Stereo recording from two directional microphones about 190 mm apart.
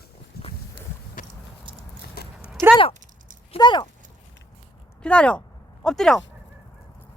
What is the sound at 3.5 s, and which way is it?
Speech, 25° left (ahead or behind).